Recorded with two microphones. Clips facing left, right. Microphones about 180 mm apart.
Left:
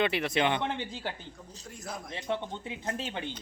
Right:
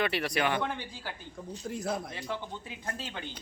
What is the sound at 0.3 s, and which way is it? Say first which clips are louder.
Speech: left 1 dB; 25° left (ahead or behind).